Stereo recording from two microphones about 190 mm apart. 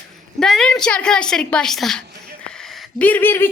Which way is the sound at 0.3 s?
5° left (ahead or behind).